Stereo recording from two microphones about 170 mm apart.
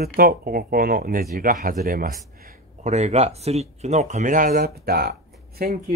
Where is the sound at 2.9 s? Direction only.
40° right (ahead or behind).